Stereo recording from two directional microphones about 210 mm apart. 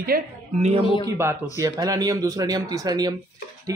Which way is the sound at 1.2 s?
15° right (ahead or behind).